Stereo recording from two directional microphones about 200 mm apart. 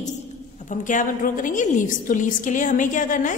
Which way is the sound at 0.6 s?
40° left (ahead or behind).